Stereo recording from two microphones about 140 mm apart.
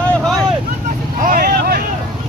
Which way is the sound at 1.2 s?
90° right.